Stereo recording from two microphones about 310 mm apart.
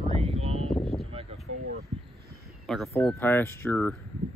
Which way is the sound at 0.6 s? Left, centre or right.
Centre.